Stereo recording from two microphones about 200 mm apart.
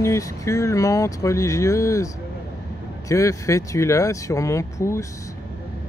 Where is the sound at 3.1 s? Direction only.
15° left (ahead or behind).